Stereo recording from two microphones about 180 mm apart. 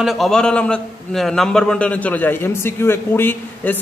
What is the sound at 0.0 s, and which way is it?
A man's voice, centre (ahead or behind).